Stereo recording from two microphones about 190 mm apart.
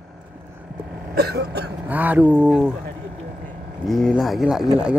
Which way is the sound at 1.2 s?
55° right (ahead or behind).